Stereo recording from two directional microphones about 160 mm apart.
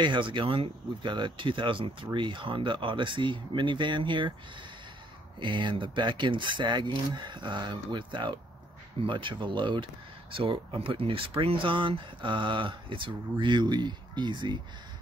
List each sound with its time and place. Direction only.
0.0 s speech: 30° right (ahead or behind)
5.4 s speech: 30° right (ahead or behind)